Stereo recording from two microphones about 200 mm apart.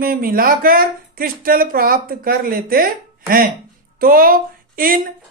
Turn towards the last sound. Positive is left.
turn(degrees=-45)  # may be behind; listen again after turning